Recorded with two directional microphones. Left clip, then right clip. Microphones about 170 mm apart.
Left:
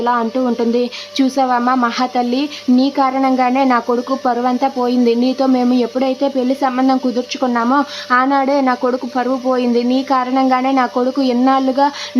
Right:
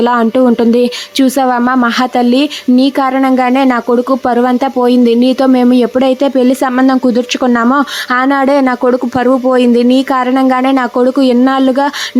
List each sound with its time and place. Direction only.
0.0 s speech: 35° right (ahead or behind)